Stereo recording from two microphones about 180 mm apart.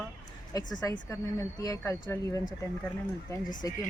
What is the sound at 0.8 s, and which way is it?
Speech, 20° left (ahead or behind).